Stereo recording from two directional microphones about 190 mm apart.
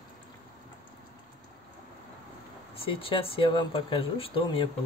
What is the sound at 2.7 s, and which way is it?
Speech, 30° left (ahead or behind).